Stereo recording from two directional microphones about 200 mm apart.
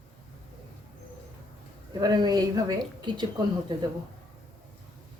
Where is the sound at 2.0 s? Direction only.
20° right (ahead or behind).